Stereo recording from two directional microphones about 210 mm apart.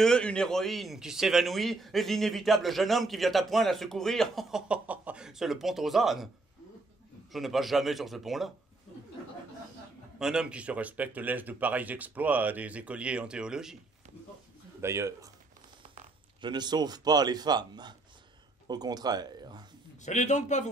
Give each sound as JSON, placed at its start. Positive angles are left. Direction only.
{"t": 0.0, "sound": "a man's voice", "side_deg": 5}
{"t": 7.3, "sound": "a man's voice", "side_deg": 0}
{"t": 10.1, "sound": "speech", "side_deg": -5}
{"t": 14.8, "sound": "speech", "side_deg": -15}
{"t": 16.3, "sound": "speech", "side_deg": -20}
{"t": 20.0, "sound": "a man's voice", "side_deg": 35}